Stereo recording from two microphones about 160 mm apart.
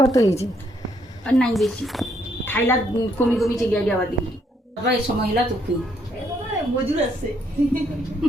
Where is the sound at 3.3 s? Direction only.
10° left (ahead or behind).